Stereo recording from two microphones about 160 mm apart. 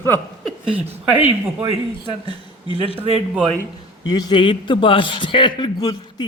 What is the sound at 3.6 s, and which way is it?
A man's voice, 25° left (ahead or behind).